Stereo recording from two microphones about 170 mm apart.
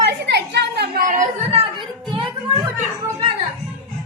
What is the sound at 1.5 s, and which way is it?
Music, 35° right (ahead or behind).